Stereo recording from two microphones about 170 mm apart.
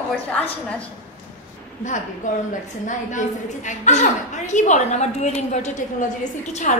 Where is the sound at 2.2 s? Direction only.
45° left (ahead or behind).